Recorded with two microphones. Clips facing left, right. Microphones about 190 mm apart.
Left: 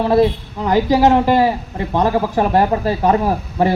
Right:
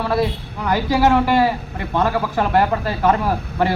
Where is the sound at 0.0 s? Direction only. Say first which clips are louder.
Left 6 dB; 25° left (ahead or behind).